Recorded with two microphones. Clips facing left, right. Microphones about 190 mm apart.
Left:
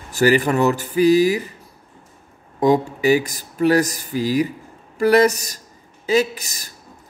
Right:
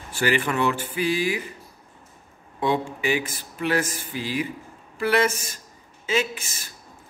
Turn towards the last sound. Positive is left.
turn(degrees=40)  # may be behind; listen again after turning